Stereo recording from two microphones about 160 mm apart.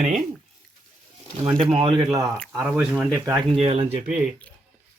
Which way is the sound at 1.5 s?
35° right (ahead or behind).